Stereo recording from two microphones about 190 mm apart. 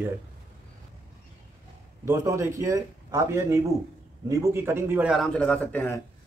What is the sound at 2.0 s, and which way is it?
A man's voice, 15° right (ahead or behind).